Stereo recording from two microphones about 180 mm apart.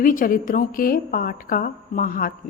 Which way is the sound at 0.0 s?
50° left (ahead or behind).